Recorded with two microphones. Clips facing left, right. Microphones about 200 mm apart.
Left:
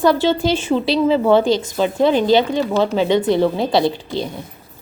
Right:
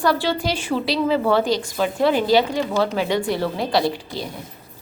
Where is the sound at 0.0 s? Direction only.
20° left (ahead or behind).